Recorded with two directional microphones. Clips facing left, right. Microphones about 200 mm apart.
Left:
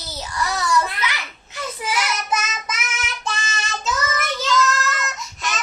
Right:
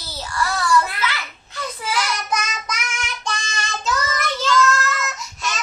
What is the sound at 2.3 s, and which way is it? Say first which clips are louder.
Child singing: even; 5° left (ahead or behind).